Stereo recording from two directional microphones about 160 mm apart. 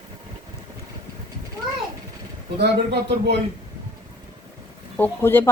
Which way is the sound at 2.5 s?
90° right.